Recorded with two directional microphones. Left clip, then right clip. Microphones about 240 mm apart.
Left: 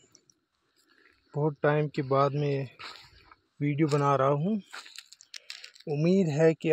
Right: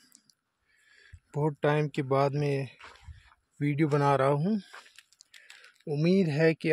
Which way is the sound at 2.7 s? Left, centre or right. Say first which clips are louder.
Left 6 dB; left.